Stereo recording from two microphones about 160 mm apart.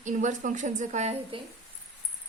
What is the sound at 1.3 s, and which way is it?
Speech, 35° right (ahead or behind).